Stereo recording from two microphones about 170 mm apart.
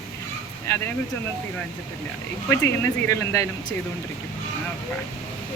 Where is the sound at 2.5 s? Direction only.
15° left (ahead or behind).